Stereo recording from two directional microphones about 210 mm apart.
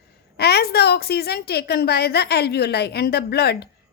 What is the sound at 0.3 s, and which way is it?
A woman's voice, 50° left (ahead or behind).